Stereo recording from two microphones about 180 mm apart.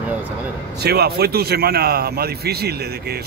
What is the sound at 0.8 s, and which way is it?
A man's voice, 60° right (ahead or behind).